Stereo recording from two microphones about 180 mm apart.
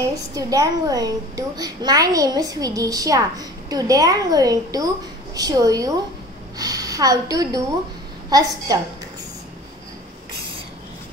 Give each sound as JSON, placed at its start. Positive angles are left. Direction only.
{"t": 0.1, "sound": "a child's voice", "side_deg": -20}